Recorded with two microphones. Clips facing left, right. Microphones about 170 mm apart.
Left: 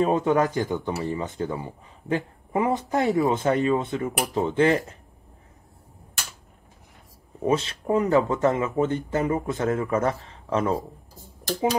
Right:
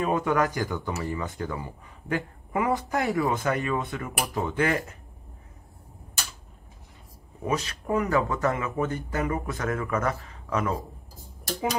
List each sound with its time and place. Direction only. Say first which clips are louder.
0.0 s speech: left 4 dB; 25° left (ahead or behind)
7.4 s speech: left 5 dB; 25° left (ahead or behind)